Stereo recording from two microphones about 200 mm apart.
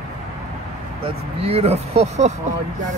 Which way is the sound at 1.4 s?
30° right (ahead or behind).